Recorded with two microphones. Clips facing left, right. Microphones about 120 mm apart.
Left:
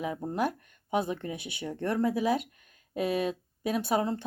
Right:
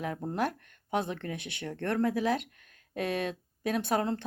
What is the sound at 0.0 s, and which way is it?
Speech, 5° left (ahead or behind).